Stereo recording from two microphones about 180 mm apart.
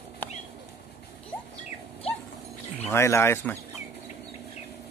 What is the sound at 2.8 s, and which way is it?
Speech, 15° left (ahead or behind).